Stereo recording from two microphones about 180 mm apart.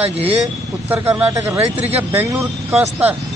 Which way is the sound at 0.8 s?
10° right (ahead or behind).